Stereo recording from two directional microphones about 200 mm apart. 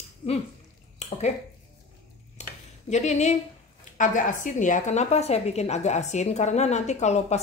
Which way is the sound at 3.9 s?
40° left (ahead or behind).